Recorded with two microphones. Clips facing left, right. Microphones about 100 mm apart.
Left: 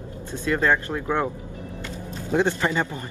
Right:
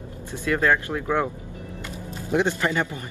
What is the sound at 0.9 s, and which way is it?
Speech, 10° left (ahead or behind).